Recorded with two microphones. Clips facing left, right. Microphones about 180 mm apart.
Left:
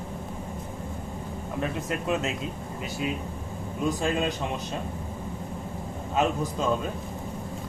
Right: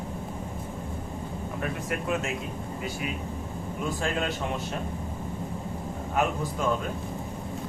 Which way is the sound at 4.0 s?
20° left (ahead or behind).